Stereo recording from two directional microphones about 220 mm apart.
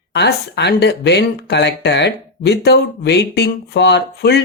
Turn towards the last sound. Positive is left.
turn(degrees=50)  # may be behind; listen again after turning